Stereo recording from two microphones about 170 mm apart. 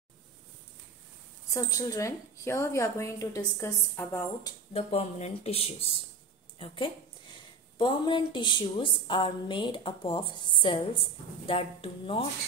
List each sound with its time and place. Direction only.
1.5 s a woman's voice: 20° left (ahead or behind)
4.9 s a woman's voice: 35° left (ahead or behind)